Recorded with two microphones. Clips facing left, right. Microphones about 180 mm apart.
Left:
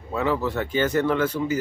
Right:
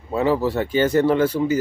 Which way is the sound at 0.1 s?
30° right (ahead or behind).